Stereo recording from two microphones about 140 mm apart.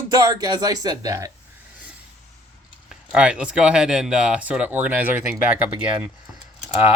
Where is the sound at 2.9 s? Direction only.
5° right (ahead or behind).